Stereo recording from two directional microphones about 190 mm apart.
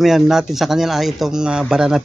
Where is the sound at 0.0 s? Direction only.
Centre (ahead or behind).